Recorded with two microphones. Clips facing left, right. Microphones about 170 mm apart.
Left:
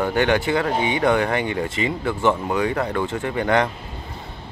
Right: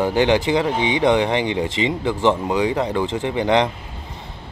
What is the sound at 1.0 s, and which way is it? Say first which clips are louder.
Speech: right 3 dB; 20° right (ahead or behind).